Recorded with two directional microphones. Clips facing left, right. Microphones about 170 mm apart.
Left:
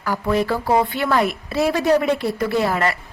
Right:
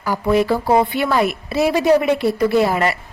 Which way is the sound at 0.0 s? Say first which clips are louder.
Right 3 dB; 10° right (ahead or behind).